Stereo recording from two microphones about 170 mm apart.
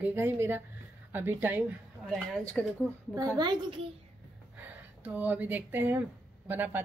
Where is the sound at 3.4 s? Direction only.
25° right (ahead or behind).